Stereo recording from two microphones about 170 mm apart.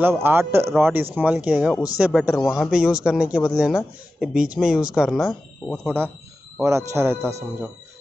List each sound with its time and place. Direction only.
0.0 s a man's voice: 15° right (ahead or behind)
6.6 s a man's voice: 15° right (ahead or behind)